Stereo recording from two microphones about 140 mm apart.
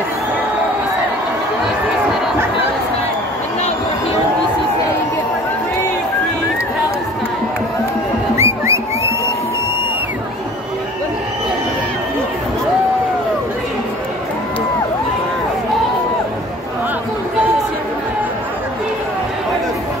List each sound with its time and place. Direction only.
8.4 s music: 20° right (ahead or behind)